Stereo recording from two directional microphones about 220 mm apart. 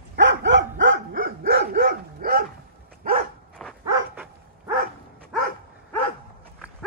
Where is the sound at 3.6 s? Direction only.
Centre (ahead or behind).